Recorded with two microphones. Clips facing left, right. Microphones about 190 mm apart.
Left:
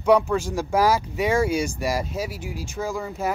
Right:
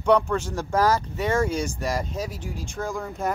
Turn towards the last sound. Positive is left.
turn(degrees=5)  # may be behind; listen again after turning